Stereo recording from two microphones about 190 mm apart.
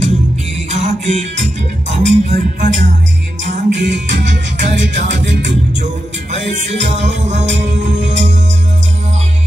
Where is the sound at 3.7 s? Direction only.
65° right (ahead or behind).